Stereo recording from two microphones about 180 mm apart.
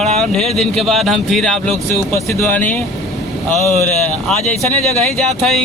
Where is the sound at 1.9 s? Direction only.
15° left (ahead or behind).